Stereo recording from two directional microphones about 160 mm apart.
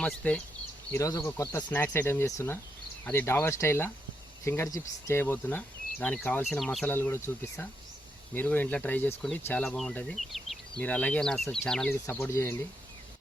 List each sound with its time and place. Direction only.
0.0 s speech: 5° left (ahead or behind)
0.9 s speech: 20° left (ahead or behind); by 6.8 s centre (ahead or behind)
6.8 s speech: 15° left (ahead or behind)
12.0 s speech: 15° left (ahead or behind)